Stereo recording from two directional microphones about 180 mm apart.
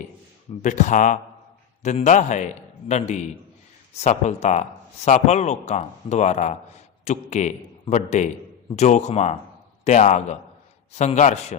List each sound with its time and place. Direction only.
0.6 s speech: 45° left (ahead or behind)